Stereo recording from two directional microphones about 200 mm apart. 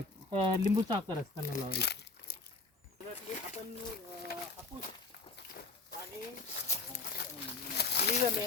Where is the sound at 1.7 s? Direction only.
55° left (ahead or behind).